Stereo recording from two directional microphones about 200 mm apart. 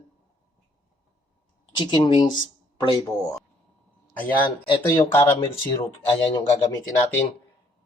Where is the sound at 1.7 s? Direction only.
20° left (ahead or behind).